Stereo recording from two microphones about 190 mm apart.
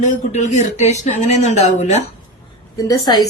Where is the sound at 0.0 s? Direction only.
40° left (ahead or behind).